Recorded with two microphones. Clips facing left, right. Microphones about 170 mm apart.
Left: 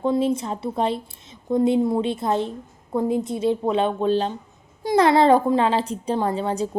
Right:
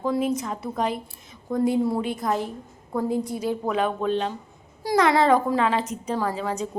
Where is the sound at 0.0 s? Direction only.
25° left (ahead or behind).